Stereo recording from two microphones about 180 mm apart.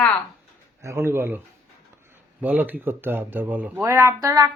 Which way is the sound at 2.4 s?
10° right (ahead or behind).